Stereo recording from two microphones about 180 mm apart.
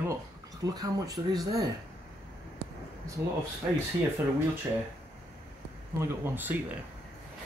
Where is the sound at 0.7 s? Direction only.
20° right (ahead or behind).